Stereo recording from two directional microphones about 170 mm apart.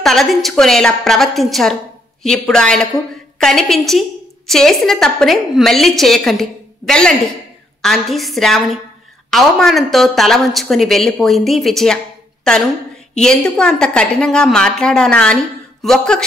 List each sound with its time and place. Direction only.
0.0 s a woman's voice: centre (ahead or behind)